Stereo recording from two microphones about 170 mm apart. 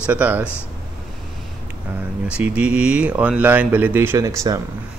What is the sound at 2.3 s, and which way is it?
Speech, 10° right (ahead or behind).